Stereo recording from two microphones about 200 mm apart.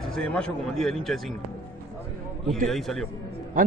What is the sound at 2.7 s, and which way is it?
Speech, centre (ahead or behind).